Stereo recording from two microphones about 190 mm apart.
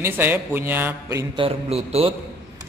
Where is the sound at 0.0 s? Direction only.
10° right (ahead or behind); by 2.1 s 30° right (ahead or behind).